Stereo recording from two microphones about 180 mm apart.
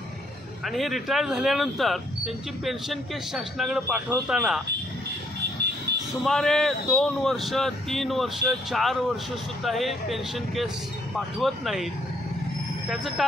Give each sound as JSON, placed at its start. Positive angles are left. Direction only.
{"t": 0.7, "sound": "speech", "side_deg": 0}
{"t": 6.2, "sound": "speech", "side_deg": 0}